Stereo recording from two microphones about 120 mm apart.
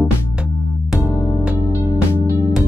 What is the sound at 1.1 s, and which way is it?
Music, 20° left (ahead or behind).